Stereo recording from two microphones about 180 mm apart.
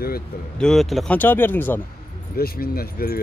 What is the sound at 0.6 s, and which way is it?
Speech, centre (ahead or behind).